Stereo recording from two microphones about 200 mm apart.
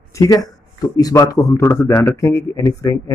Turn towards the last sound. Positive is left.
turn(degrees=15)  # may be behind; listen again after turning